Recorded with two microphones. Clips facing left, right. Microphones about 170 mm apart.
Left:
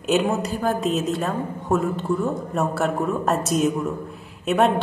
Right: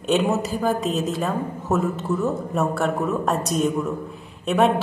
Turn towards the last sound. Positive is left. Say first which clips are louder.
# even
turn(degrees=0)  # may be behind; listen again after turning